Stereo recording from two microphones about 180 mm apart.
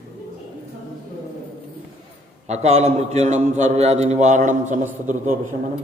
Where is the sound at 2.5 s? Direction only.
35° right (ahead or behind).